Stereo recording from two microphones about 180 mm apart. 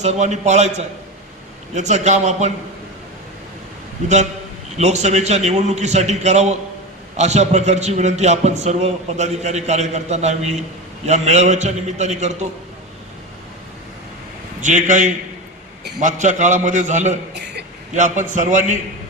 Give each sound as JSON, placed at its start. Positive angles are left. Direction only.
{"t": 0.0, "sound": "a man's voice", "side_deg": -40}
{"t": 4.8, "sound": "a man's voice", "side_deg": -40}
{"t": 14.6, "sound": "a man's voice", "side_deg": -45}